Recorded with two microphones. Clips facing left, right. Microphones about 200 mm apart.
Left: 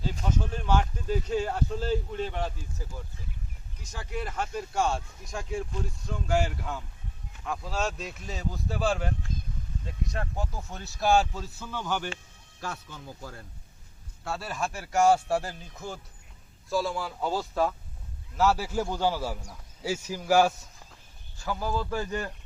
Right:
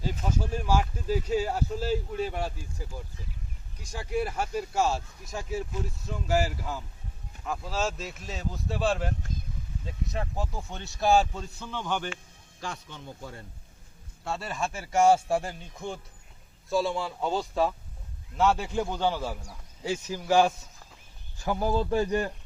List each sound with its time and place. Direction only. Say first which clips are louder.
0.0 s speech: even; 10° right (ahead or behind)
17.3 s speech: right 1 dB; 10° right (ahead or behind)
18.3 s speech: even; 5° left (ahead or behind)
21.3 s speech: right 4 dB; 20° right (ahead or behind)